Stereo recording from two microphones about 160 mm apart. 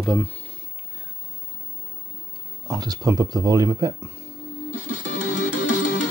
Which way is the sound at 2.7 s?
25° right (ahead or behind).